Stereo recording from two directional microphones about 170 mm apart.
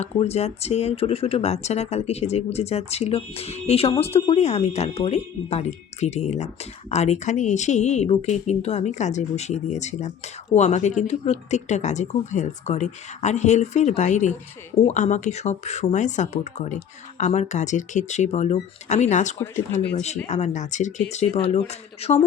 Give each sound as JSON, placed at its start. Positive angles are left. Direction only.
{"t": 0.0, "sound": "speech", "side_deg": 40}